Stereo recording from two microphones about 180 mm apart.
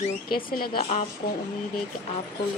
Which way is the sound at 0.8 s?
35° left (ahead or behind).